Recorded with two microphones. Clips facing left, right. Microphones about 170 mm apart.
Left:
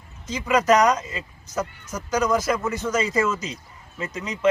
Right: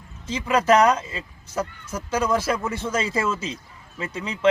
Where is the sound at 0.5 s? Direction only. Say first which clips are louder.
Even; 5° right (ahead or behind).